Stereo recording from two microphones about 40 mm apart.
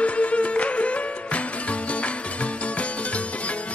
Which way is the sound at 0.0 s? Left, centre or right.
Left.